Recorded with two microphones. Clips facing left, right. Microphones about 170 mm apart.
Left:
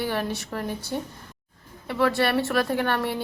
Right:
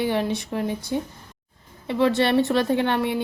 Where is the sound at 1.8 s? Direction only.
20° right (ahead or behind).